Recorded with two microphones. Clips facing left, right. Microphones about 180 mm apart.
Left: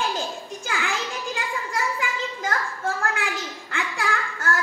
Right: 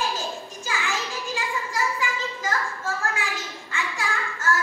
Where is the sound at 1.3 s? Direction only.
60° left (ahead or behind).